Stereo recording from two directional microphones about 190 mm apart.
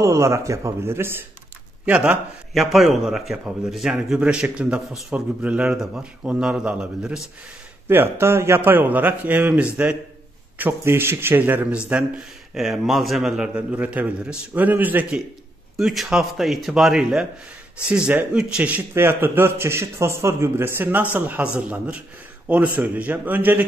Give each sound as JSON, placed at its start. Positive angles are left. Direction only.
{"t": 0.0, "sound": "a man's voice", "side_deg": -15}